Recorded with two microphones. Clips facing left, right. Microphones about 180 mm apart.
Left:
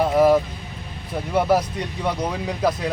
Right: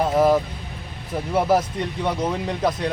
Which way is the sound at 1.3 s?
Centre (ahead or behind).